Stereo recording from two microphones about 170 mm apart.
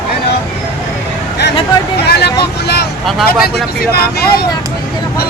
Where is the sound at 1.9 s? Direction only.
70° left (ahead or behind).